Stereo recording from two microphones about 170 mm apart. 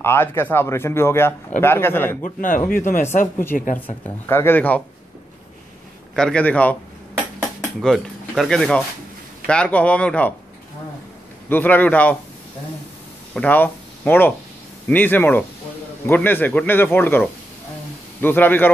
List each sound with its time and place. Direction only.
0.0 s speech: 15° left (ahead or behind)
2.2 s speech: 50° left (ahead or behind)
4.3 s speech: 15° left (ahead or behind)
6.1 s speech: 5° left (ahead or behind)
11.4 s speech: 10° left (ahead or behind)
13.3 s speech: 10° left (ahead or behind)
18.2 s speech: 10° left (ahead or behind)